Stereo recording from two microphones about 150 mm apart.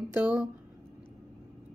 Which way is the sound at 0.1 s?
10° right (ahead or behind).